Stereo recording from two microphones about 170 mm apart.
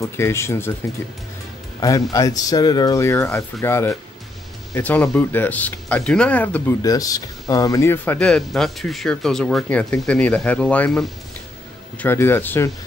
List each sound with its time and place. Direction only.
0.0 s speech: 15° left (ahead or behind)
1.8 s speech: 20° left (ahead or behind)